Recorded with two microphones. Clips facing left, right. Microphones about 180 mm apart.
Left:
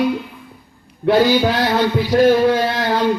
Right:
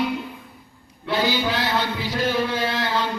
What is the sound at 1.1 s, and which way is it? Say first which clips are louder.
Speech: left 9 dB; 45° left (ahead or behind).